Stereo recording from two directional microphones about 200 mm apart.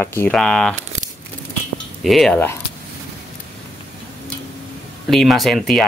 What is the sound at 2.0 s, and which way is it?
Speech, centre (ahead or behind).